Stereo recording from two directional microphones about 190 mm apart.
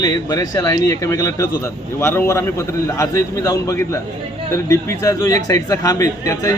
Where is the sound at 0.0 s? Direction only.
20° left (ahead or behind).